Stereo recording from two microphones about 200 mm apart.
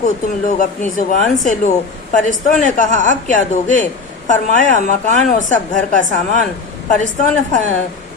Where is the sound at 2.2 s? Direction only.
40° left (ahead or behind).